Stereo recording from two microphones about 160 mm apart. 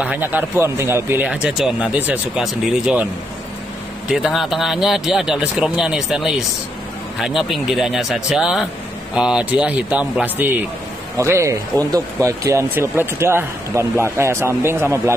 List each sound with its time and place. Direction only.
0.0 s speech: 10° right (ahead or behind)
4.1 s speech: centre (ahead or behind); by 15.1 s 15° right (ahead or behind)